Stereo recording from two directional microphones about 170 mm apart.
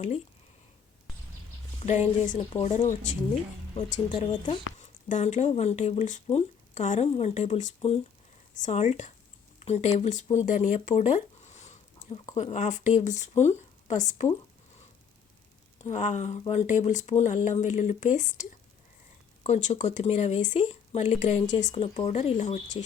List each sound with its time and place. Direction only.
1.8 s a woman's voice: 40° left (ahead or behind)
4.1 s a woman's voice: 35° left (ahead or behind)
15.9 s a woman's voice: 45° left (ahead or behind)